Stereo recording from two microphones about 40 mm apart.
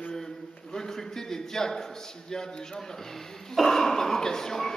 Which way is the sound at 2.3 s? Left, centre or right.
Centre.